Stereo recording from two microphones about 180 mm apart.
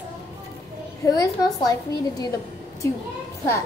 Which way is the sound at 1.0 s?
20° left (ahead or behind).